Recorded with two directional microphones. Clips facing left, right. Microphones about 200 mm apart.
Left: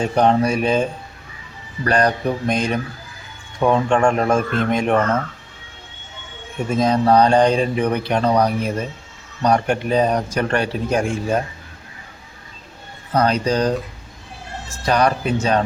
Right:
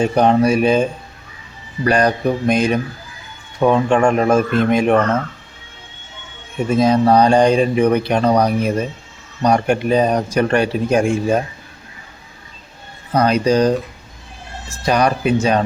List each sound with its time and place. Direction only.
0.0 s speech: 10° right (ahead or behind)
6.7 s speech: 10° right (ahead or behind)
13.1 s speech: 10° right (ahead or behind)